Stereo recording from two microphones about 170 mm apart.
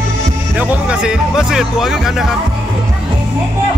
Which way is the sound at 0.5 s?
5° right (ahead or behind).